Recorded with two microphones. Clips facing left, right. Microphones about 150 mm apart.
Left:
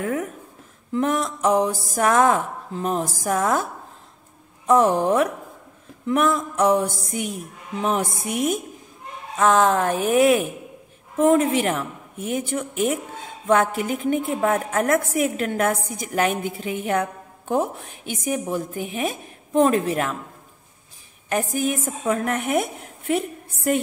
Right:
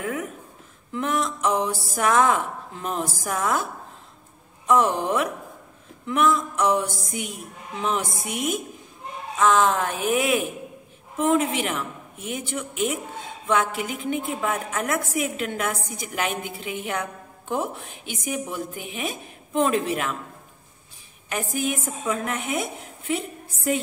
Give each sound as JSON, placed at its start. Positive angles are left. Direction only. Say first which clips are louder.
{"t": 0.9, "sound": "a woman's voice", "louder": "left 3 dB", "side_deg": 45}
{"t": 4.6, "sound": "a woman's voice", "louder": "left 4 dB", "side_deg": 40}
{"t": 21.3, "sound": "a woman's voice", "louder": "left 4 dB", "side_deg": 45}